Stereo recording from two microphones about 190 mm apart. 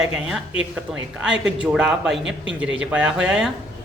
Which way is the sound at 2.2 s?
75° right (ahead or behind).